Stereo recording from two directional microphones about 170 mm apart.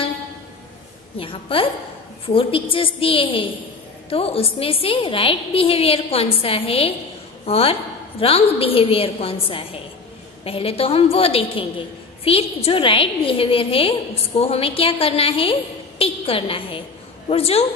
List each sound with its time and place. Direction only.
1.1 s a woman's voice: 30° left (ahead or behind)